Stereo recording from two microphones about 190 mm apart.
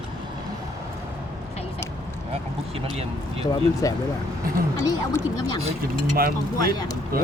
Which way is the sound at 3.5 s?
20° left (ahead or behind).